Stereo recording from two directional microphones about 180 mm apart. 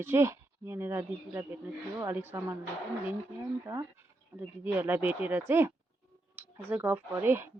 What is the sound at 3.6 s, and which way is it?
Speech, 20° right (ahead or behind).